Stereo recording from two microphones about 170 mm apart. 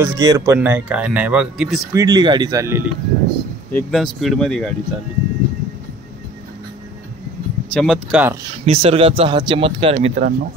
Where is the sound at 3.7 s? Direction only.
5° left (ahead or behind).